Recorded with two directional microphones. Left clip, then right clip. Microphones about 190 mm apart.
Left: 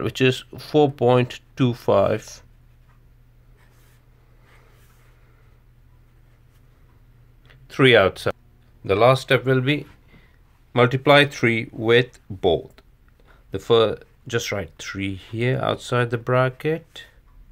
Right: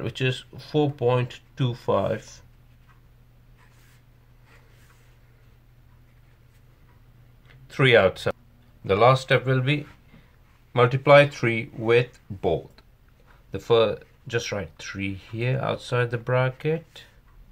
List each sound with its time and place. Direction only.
0.0 s speech: 35° left (ahead or behind)
7.4 s speech: 25° left (ahead or behind)